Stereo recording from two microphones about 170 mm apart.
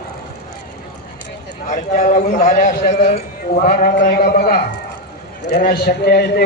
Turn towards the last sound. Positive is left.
turn(degrees=65)  # may be behind; listen again after turning